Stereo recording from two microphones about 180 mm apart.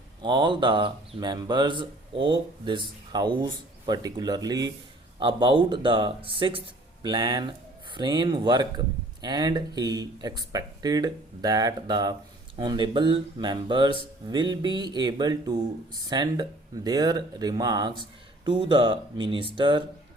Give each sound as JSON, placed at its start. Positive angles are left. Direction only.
{"t": 0.2, "sound": "speech", "side_deg": -25}